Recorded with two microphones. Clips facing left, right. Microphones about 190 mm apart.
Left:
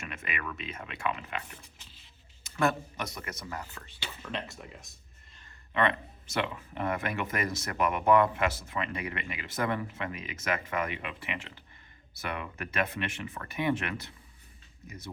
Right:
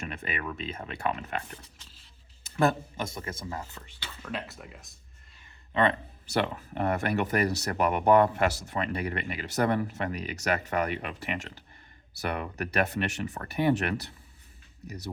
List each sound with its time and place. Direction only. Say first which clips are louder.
0.0 s speech: right 3 dB; 35° right (ahead or behind)
2.6 s speech: right 3 dB; 30° right (ahead or behind)
4.2 s speech: right 2 dB; 5° right (ahead or behind)
5.7 s speech: right 3 dB; 30° right (ahead or behind)